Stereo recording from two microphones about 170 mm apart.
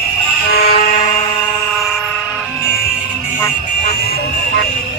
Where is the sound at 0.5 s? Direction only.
65° left (ahead or behind).